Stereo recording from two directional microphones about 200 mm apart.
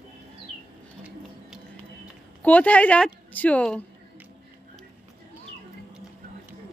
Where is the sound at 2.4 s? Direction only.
5° left (ahead or behind).